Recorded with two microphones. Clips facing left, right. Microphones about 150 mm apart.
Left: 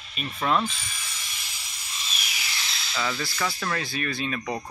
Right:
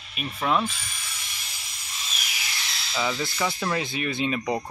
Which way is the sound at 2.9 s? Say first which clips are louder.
Right 2 dB; 15° right (ahead or behind).